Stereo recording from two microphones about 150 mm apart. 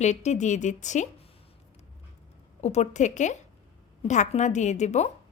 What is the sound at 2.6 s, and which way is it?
A woman's voice, 50° left (ahead or behind).